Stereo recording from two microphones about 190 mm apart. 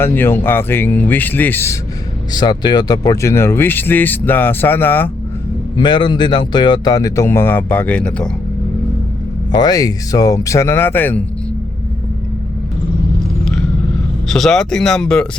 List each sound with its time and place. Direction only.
0.0 s speech: 10° left (ahead or behind)
2.3 s speech: 20° left (ahead or behind)
5.7 s a man's voice: 20° left (ahead or behind); by 8.3 s 5° left (ahead or behind)
9.5 s speech: 20° left (ahead or behind)
13.4 s vehicle: 5° left (ahead or behind)
14.3 s speech: centre (ahead or behind)